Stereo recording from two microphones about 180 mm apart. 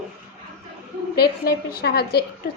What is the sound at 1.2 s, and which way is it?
A woman's voice, 55° left (ahead or behind).